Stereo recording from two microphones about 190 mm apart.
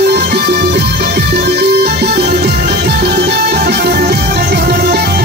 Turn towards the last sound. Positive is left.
turn(degrees=-55)  # may be behind; listen again after turning